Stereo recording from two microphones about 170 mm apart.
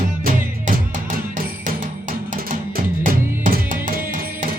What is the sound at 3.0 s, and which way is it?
Music, 55° right (ahead or behind).